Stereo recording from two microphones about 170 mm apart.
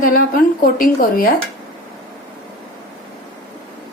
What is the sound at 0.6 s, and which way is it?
Speech, 55° left (ahead or behind).